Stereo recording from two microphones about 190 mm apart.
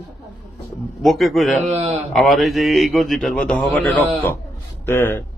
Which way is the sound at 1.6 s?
35° right (ahead or behind).